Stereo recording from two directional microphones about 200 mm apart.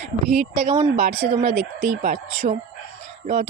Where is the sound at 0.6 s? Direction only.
25° right (ahead or behind).